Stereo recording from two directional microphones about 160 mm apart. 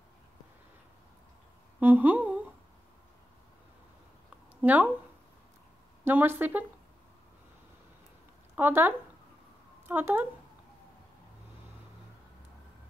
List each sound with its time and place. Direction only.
1.8 s humming: 10° right (ahead or behind)
4.6 s speech: 10° right (ahead or behind)
6.0 s speech: 15° right (ahead or behind)
8.5 s speech: 10° right (ahead or behind)